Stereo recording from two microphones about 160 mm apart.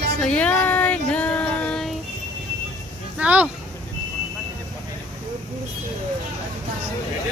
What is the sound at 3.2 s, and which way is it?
Speech, 10° right (ahead or behind).